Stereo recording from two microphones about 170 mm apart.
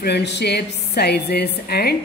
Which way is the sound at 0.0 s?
80° left.